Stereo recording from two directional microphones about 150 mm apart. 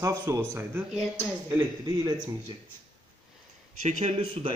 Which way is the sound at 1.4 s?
20° right (ahead or behind).